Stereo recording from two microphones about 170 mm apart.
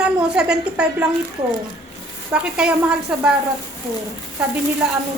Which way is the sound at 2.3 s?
5° right (ahead or behind).